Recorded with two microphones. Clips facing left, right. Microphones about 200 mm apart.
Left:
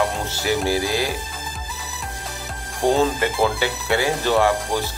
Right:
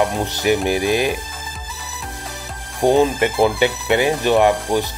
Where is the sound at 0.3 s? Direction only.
20° right (ahead or behind).